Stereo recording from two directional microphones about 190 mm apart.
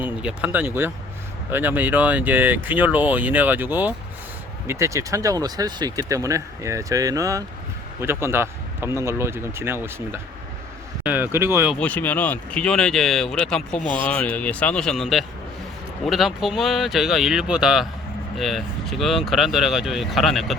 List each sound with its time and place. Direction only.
0.0 s speech: 5° right (ahead or behind)
11.8 s speech: 10° left (ahead or behind)
16.0 s speech: centre (ahead or behind)